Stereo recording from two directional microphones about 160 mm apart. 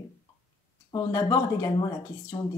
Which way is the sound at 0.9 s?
20° left (ahead or behind).